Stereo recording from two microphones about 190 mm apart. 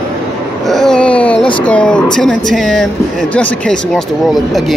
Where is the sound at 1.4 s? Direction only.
25° left (ahead or behind).